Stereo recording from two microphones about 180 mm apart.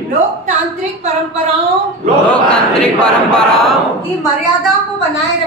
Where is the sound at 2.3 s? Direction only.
5° left (ahead or behind).